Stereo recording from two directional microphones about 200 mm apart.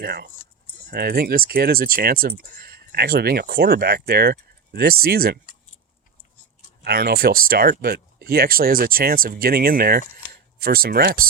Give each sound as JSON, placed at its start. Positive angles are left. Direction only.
{"t": 0.0, "sound": "speech", "side_deg": -55}
{"t": 6.8, "sound": "speech", "side_deg": -50}